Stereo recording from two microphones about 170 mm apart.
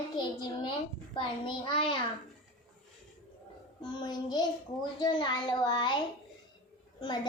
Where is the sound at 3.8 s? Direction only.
25° left (ahead or behind).